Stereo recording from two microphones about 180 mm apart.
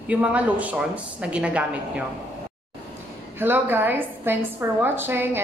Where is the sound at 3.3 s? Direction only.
10° right (ahead or behind).